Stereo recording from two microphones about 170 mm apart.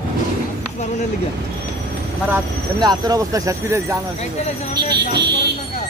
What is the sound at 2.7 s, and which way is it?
Speech, 25° right (ahead or behind).